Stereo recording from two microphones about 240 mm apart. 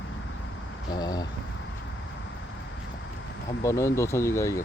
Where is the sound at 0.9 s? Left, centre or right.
Centre.